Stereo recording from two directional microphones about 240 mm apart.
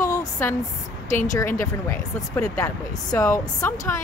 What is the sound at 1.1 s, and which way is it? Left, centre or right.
Speech, left.